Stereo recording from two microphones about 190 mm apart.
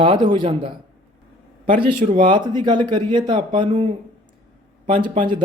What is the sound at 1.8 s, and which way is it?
Speech, 30° right (ahead or behind).